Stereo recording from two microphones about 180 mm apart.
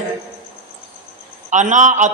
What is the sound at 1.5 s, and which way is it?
Speech, 45° right (ahead or behind).